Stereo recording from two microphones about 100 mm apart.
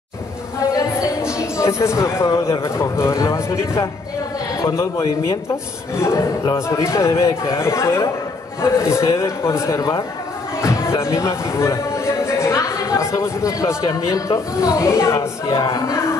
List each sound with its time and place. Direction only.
1.4 s a man's voice: 30° left (ahead or behind)
10.6 s a sound: 30° left (ahead or behind)
13.8 s a man's voice: 35° left (ahead or behind)